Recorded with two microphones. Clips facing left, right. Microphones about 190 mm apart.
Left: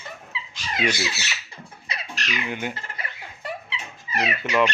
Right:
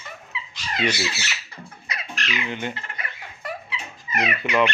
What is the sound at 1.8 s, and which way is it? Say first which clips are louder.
Chicken: right 1 dB; 35° left (ahead or behind).